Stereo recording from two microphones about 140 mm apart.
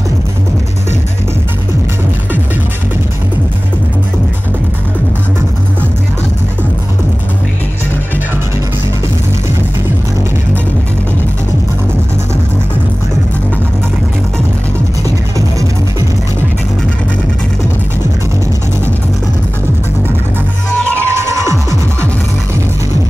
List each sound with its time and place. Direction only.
21.0 s music: 20° right (ahead or behind)